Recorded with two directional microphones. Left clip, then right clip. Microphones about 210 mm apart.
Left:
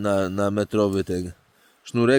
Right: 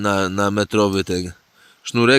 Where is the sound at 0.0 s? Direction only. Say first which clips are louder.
Right 4 dB; 20° right (ahead or behind).